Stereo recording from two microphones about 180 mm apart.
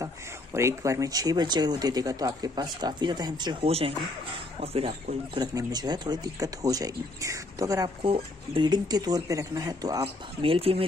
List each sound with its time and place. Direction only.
0.6 s speech: 15° right (ahead or behind)
8.0 s speech: 30° right (ahead or behind)
10.0 s speech: 30° right (ahead or behind)